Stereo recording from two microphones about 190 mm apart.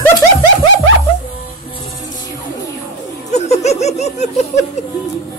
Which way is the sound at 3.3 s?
35° left (ahead or behind).